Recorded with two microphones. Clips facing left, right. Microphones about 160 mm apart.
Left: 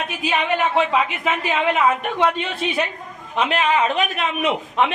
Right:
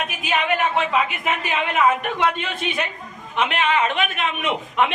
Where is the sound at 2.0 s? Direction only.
30° left (ahead or behind).